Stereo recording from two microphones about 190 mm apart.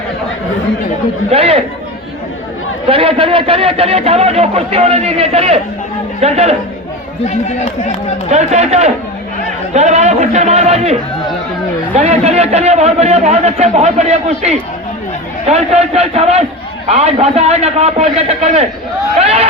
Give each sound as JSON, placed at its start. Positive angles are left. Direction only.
{"t": 1.3, "sound": "a man's voice", "side_deg": -30}
{"t": 2.8, "sound": "a man's voice", "side_deg": -30}
{"t": 8.3, "sound": "a man's voice", "side_deg": -35}
{"t": 12.0, "sound": "a man's voice", "side_deg": -35}
{"t": 19.2, "sound": "a sound", "side_deg": -35}